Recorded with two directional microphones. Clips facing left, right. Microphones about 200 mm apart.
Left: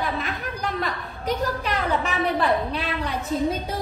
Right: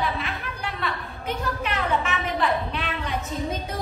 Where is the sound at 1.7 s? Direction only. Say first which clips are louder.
Right 2 dB; 35° left (ahead or behind).